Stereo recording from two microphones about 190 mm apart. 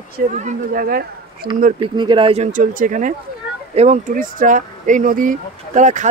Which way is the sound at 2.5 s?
45° right (ahead or behind).